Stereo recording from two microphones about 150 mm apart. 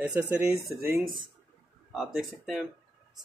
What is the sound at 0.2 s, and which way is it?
Speech, 10° right (ahead or behind).